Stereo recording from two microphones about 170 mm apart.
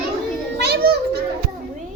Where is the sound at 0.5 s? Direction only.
75° right (ahead or behind).